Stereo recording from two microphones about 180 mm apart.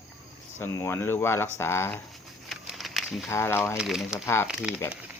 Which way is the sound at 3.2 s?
15° left (ahead or behind).